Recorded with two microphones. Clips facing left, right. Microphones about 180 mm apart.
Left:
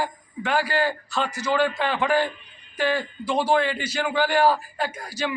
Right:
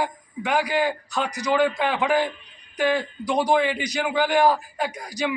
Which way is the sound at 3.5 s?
5° right (ahead or behind).